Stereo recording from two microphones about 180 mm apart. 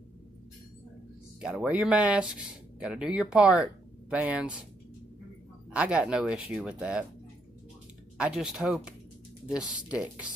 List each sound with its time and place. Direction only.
1.4 s speech: 5° right (ahead or behind)
5.7 s speech: 5° right (ahead or behind)
8.2 s speech: 5° right (ahead or behind)